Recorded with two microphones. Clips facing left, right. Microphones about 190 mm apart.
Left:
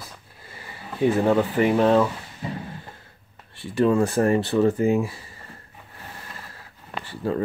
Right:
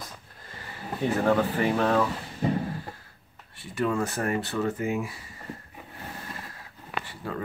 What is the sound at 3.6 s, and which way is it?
Speech, 30° left (ahead or behind).